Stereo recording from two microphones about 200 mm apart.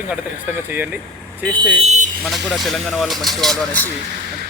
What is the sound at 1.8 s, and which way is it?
Vehicle, 35° right (ahead or behind).